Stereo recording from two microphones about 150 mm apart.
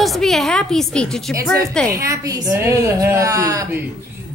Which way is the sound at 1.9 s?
20° right (ahead or behind).